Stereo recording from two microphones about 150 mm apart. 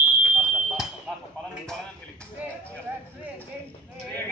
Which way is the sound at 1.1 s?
5° right (ahead or behind).